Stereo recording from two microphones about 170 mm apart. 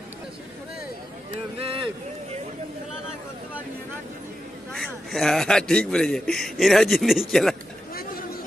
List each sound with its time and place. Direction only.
1.3 s speech: 35° right (ahead or behind)
4.7 s a man's voice: centre (ahead or behind)
7.9 s a sound: 60° left (ahead or behind)